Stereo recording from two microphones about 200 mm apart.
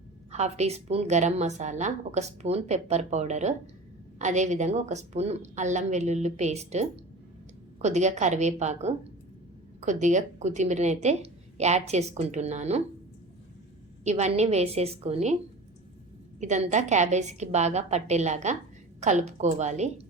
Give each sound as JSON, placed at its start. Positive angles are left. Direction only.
{"t": 0.3, "sound": "a woman's voice", "side_deg": -35}
{"t": 14.0, "sound": "a woman's voice", "side_deg": -35}
{"t": 16.4, "sound": "a woman's voice", "side_deg": -35}